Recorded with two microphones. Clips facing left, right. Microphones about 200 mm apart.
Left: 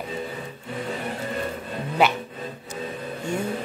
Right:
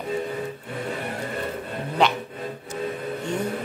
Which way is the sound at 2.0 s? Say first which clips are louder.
Left 1 dB; 10° left (ahead or behind).